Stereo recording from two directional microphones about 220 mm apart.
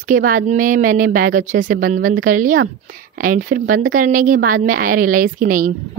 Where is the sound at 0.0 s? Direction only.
40° right (ahead or behind).